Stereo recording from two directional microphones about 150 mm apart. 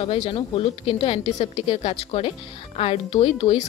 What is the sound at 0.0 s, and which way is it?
A woman's voice, 35° left (ahead or behind).